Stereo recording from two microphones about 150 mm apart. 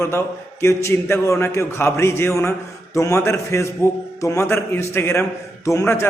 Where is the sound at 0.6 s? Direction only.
20° left (ahead or behind).